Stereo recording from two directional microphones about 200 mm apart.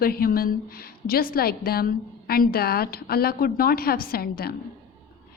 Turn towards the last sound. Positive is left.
turn(degrees=50)  # may be behind; listen again after turning